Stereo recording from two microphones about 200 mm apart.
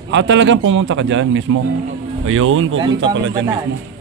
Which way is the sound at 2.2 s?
90° right.